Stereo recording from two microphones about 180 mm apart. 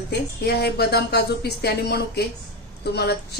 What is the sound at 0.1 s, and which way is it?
Speech, 65° left (ahead or behind).